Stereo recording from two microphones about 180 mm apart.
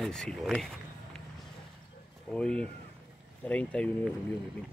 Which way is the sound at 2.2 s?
5° left (ahead or behind).